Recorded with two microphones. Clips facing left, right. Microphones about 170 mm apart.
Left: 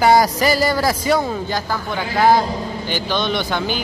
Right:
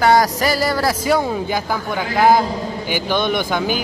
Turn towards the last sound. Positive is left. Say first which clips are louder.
# right 2 dB
turn(degrees=-10)  # may be behind; listen again after turning